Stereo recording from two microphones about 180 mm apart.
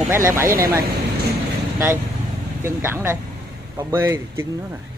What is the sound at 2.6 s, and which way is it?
Speech, 15° right (ahead or behind).